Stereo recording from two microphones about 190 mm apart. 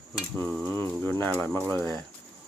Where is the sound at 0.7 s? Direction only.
10° left (ahead or behind).